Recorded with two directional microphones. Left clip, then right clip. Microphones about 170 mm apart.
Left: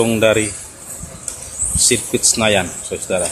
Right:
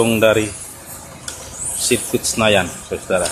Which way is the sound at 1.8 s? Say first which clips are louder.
Left 2 dB; 15° left (ahead or behind).